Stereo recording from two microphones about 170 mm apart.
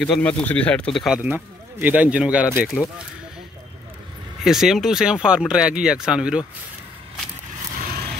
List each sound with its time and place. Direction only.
0.0 s speech: 5° left (ahead or behind)
4.5 s speech: centre (ahead or behind)
7.9 s a sound: 65° right (ahead or behind)